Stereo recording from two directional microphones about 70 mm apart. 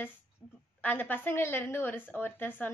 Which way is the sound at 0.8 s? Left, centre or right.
Left.